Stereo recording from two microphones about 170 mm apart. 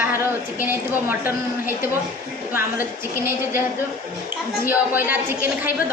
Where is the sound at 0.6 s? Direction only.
10° right (ahead or behind).